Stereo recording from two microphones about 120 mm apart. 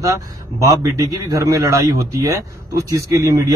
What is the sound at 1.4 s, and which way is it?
A man's voice, 30° right (ahead or behind).